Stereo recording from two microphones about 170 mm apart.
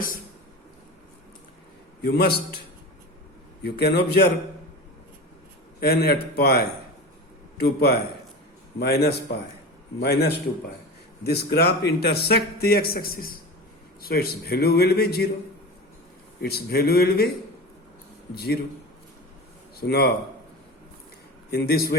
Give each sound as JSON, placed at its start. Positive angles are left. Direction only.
{"t": 2.0, "sound": "a man's voice", "side_deg": 65}
{"t": 3.6, "sound": "a man's voice", "side_deg": 70}
{"t": 5.8, "sound": "a man's voice", "side_deg": 70}
{"t": 16.4, "sound": "speech", "side_deg": 65}
{"t": 18.3, "sound": "speech", "side_deg": 65}
{"t": 19.8, "sound": "a man's voice", "side_deg": 70}
{"t": 21.5, "sound": "speech", "side_deg": 65}